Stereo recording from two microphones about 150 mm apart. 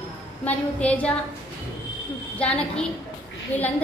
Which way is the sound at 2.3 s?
10° left (ahead or behind).